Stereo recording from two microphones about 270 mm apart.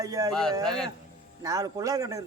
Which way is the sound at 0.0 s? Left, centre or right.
Centre.